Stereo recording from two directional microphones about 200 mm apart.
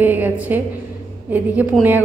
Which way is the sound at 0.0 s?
10° right (ahead or behind).